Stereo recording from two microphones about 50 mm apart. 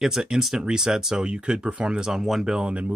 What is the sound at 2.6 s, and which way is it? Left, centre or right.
Speech, right.